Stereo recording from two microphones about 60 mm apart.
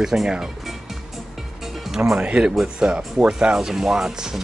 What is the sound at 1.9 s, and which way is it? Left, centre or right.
Music, centre.